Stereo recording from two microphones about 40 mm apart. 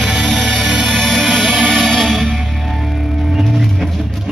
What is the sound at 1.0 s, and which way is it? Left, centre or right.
Music, centre.